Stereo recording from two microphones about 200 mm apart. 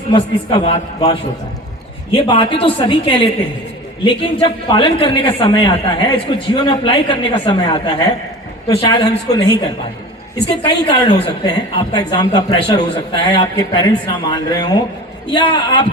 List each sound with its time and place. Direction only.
0.1 s speech: 25° left (ahead or behind)
10.8 s speech: 25° left (ahead or behind)